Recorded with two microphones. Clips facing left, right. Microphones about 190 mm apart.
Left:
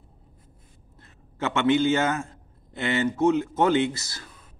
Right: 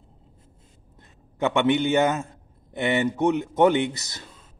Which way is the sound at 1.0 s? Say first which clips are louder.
Right 4 dB; 15° right (ahead or behind).